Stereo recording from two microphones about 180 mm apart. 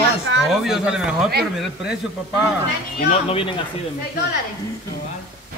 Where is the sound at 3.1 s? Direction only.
30° left (ahead or behind).